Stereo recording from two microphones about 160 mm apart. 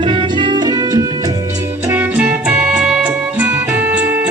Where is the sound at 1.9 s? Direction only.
10° right (ahead or behind).